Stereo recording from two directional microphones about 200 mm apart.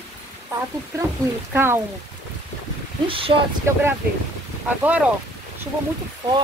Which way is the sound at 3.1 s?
25° right (ahead or behind).